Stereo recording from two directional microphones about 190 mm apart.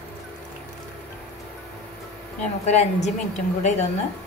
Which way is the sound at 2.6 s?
35° left (ahead or behind).